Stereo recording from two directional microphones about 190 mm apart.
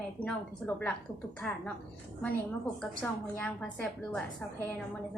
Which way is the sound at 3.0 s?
5° left (ahead or behind).